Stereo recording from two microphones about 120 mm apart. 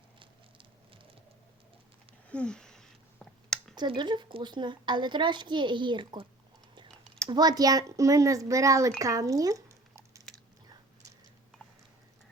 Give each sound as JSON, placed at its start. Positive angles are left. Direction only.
{"t": 2.3, "sound": "a sound", "side_deg": 5}
{"t": 3.8, "sound": "a woman's voice", "side_deg": -40}
{"t": 7.3, "sound": "speech", "side_deg": -35}
{"t": 9.0, "sound": "squish", "side_deg": -25}